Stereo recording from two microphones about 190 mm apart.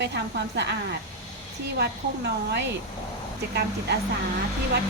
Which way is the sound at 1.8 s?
65° right (ahead or behind).